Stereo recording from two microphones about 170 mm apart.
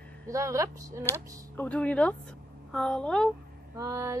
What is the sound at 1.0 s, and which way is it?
A woman's voice, 10° left (ahead or behind).